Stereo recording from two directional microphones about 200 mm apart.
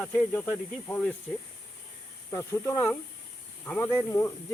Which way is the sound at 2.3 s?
15° left (ahead or behind).